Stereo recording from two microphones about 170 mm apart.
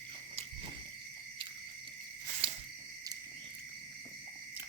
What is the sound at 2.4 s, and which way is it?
Cricket, 30° right (ahead or behind).